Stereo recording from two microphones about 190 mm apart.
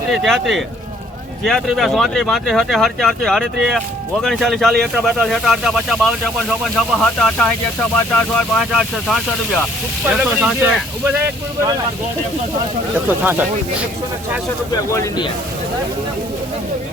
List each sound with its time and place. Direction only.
0.1 s speech: centre (ahead or behind)
14.7 s speech: 20° left (ahead or behind)